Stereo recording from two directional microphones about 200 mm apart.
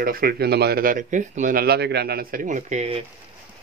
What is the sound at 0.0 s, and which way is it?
A man's voice, 50° right (ahead or behind).